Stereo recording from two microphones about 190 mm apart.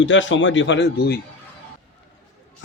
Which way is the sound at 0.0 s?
80° left.